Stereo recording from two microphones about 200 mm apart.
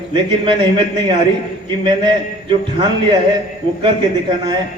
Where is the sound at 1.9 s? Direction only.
25° right (ahead or behind).